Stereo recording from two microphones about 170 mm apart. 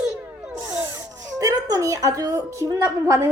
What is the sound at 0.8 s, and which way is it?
A woman's voice, 20° right (ahead or behind).